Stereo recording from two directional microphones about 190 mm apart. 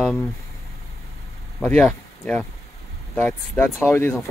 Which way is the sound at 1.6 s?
5° left (ahead or behind).